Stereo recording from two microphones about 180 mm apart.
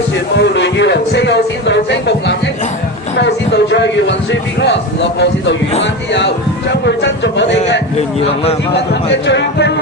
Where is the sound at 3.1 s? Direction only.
70° left (ahead or behind).